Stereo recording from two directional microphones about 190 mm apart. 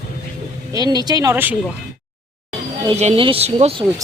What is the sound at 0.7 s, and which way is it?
Speech, 20° right (ahead or behind).